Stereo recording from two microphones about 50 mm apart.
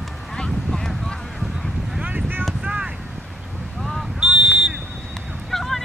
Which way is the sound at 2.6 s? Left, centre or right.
Centre.